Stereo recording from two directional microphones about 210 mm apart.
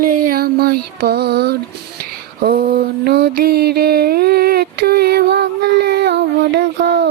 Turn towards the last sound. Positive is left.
turn(degrees=-55)  # may be behind; listen again after turning